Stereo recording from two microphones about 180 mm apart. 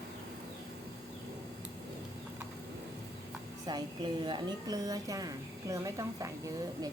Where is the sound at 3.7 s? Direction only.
25° right (ahead or behind).